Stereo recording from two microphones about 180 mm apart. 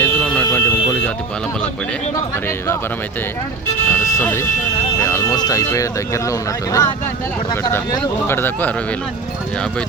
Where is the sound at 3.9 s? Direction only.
15° left (ahead or behind).